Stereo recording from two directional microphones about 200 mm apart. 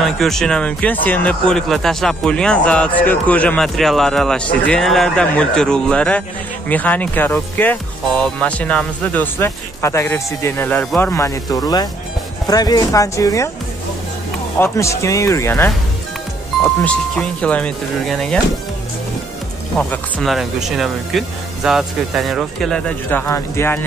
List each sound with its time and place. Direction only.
0.0 s speech: centre (ahead or behind)
14.6 s speech: 15° left (ahead or behind)
19.8 s speech: 5° left (ahead or behind)